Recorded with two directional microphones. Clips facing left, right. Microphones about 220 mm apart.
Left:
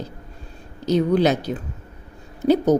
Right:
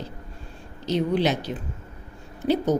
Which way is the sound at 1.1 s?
40° left (ahead or behind).